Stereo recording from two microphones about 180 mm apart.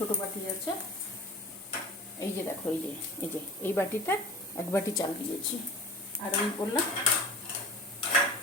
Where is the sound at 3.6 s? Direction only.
15° left (ahead or behind).